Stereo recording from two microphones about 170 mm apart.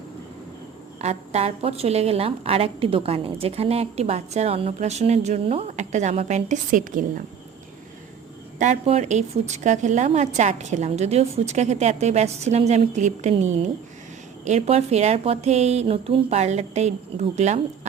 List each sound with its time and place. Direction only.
0.9 s a woman's voice: 40° right (ahead or behind)
8.5 s a woman's voice: 45° right (ahead or behind)